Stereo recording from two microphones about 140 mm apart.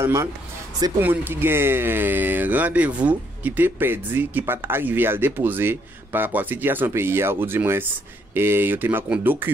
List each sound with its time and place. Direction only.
0.0 s speech: 20° right (ahead or behind)